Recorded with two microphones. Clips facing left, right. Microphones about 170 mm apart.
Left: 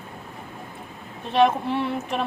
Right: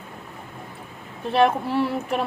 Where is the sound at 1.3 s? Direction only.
5° right (ahead or behind).